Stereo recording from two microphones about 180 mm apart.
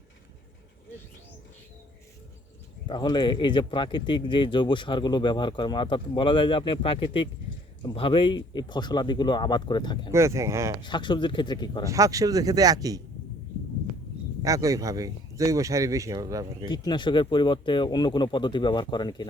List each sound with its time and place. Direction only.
2.8 s speech: 25° left (ahead or behind)
10.1 s speech: 15° right (ahead or behind)
10.8 s speech: 25° left (ahead or behind)
11.9 s speech: 20° right (ahead or behind)
14.4 s speech: 20° right (ahead or behind)
16.6 s speech: 25° left (ahead or behind)